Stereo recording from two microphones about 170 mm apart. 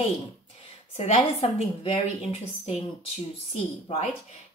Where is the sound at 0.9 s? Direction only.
40° left (ahead or behind).